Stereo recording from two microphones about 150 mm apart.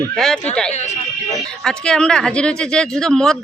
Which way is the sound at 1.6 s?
5° left (ahead or behind).